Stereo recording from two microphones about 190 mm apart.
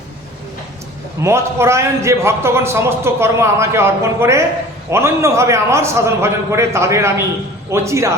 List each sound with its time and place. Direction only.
1.2 s a man's voice: 15° right (ahead or behind)